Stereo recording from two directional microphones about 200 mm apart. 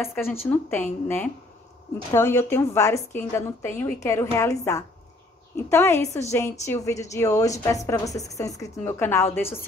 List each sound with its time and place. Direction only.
0.0 s a woman's voice: 10° left (ahead or behind)